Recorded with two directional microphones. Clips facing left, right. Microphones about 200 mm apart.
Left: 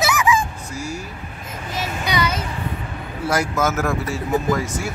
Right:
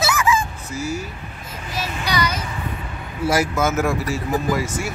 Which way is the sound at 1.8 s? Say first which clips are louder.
Left 1 dB; 25° left (ahead or behind).